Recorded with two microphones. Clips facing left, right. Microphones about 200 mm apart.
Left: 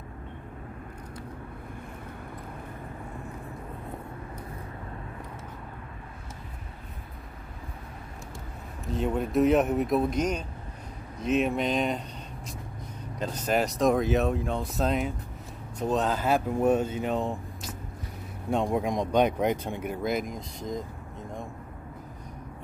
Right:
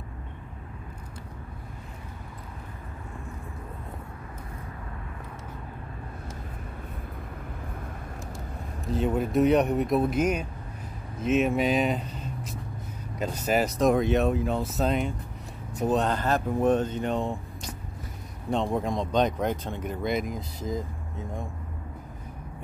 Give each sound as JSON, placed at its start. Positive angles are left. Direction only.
{"t": 8.8, "sound": "speech", "side_deg": 0}
{"t": 13.2, "sound": "speech", "side_deg": -10}